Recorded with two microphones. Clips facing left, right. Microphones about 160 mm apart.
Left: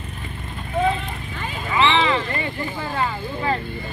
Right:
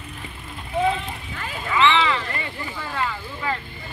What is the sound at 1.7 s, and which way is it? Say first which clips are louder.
Vehicle: even; 25° left (ahead or behind).